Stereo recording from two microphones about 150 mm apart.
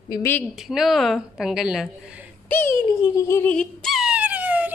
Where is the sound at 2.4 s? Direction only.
15° left (ahead or behind).